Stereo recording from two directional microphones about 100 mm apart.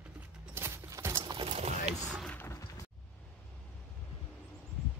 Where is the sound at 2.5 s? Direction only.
30° left (ahead or behind).